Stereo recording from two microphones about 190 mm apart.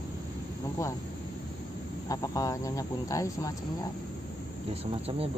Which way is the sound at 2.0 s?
15° left (ahead or behind).